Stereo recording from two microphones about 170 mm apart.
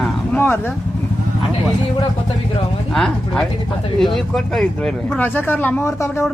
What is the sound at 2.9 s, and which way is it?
A man's voice, centre (ahead or behind).